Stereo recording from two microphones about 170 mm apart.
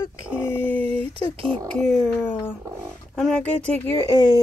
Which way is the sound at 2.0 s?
10° left (ahead or behind).